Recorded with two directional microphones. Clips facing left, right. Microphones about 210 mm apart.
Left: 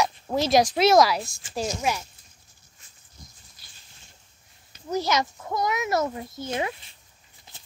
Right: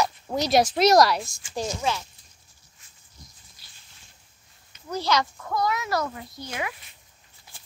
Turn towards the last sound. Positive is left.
turn(degrees=30)  # may be behind; listen again after turning